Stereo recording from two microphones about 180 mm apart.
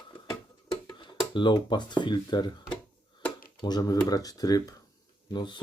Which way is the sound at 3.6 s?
20° left (ahead or behind).